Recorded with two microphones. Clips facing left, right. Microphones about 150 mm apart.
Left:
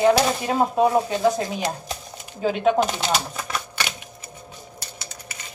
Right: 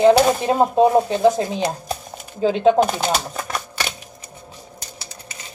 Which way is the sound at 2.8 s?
45° right (ahead or behind).